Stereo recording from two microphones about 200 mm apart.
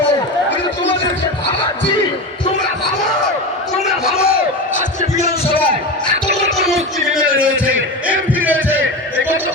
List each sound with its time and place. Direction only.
4.2 s crowd: 45° left (ahead or behind)
5.5 s a sound: 10° left (ahead or behind)
7.4 s heart sounds: 5° right (ahead or behind)